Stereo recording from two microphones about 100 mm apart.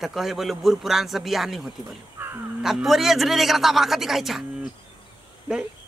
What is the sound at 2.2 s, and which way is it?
Crow, 20° right (ahead or behind).